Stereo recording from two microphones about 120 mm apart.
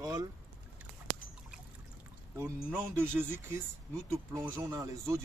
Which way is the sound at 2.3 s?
20° right (ahead or behind).